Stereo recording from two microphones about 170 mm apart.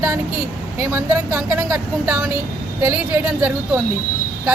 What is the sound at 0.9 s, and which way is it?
Speech, 10° right (ahead or behind).